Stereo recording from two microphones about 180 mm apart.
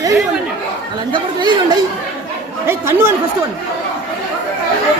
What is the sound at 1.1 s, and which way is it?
Chatter, 25° right (ahead or behind).